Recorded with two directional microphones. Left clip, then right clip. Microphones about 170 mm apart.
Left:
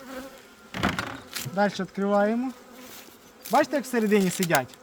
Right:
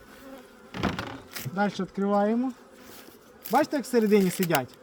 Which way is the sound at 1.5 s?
15° left (ahead or behind).